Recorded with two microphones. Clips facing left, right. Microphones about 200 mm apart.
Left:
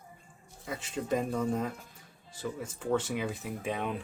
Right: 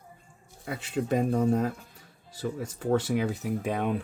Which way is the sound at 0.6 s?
60° right (ahead or behind).